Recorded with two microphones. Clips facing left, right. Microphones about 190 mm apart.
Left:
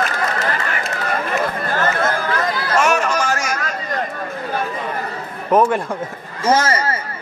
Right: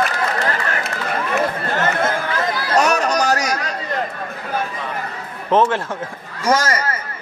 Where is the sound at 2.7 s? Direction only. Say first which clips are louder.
Right 1 dB; 40° right (ahead or behind).